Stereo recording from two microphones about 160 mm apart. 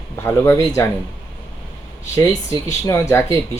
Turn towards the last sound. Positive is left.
turn(degrees=15)  # may be behind; listen again after turning